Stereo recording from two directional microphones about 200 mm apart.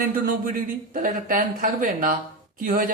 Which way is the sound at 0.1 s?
45° right (ahead or behind).